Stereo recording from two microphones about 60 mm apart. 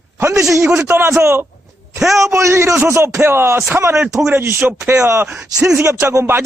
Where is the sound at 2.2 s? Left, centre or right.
Right.